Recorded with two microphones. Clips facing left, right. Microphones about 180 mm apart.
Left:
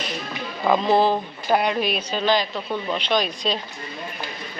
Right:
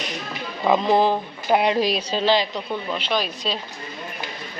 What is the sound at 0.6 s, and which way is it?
Speech, 10° right (ahead or behind).